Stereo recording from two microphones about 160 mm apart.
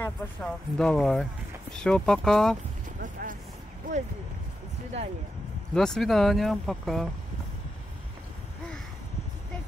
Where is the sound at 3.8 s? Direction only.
55° right (ahead or behind).